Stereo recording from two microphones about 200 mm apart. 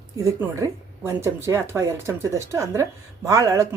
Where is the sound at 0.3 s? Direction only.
15° right (ahead or behind).